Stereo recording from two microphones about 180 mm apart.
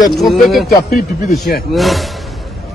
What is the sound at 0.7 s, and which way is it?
Speech, 55° left (ahead or behind).